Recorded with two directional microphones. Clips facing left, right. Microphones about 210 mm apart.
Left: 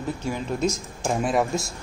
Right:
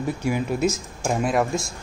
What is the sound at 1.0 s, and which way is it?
Speech, centre (ahead or behind).